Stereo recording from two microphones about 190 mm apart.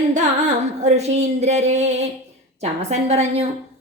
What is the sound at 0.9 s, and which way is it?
A woman's voice, 35° right (ahead or behind).